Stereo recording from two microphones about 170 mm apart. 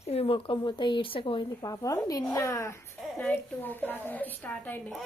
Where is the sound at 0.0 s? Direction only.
35° left (ahead or behind); by 2.8 s 15° left (ahead or behind).